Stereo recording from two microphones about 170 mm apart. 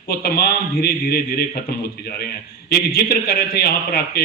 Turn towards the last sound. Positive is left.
turn(degrees=65)  # may be behind; listen again after turning